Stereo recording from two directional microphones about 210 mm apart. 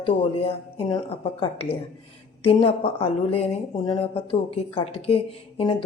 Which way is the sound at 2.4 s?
25° left (ahead or behind).